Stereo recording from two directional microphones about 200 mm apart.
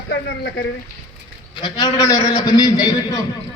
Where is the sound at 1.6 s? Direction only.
20° left (ahead or behind).